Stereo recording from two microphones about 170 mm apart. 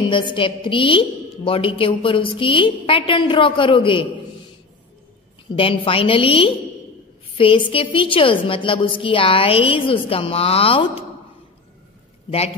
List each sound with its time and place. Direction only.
0.1 s a woman's voice: 30° left (ahead or behind)
5.6 s a woman's voice: 30° left (ahead or behind)